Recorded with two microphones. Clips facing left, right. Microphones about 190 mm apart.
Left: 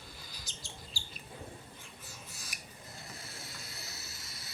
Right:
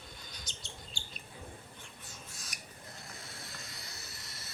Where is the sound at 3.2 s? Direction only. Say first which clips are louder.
Even; 5° left (ahead or behind).